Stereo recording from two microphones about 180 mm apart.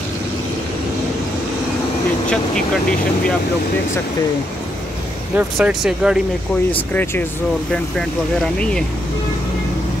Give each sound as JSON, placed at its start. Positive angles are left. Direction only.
{"t": 5.3, "sound": "speech", "side_deg": -5}
{"t": 6.7, "sound": "speech", "side_deg": 10}